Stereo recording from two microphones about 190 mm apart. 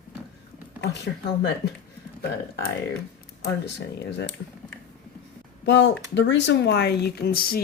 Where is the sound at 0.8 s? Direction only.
60° left (ahead or behind).